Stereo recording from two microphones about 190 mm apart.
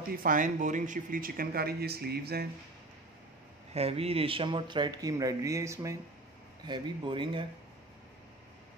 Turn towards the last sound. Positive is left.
turn(degrees=-25)  # may be behind; listen again after turning